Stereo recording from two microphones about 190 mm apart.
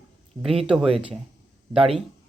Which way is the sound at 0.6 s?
Centre (ahead or behind).